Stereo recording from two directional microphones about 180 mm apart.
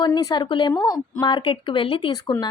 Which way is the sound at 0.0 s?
20° left (ahead or behind).